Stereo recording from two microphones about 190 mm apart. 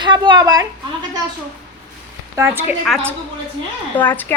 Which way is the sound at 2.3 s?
10° right (ahead or behind).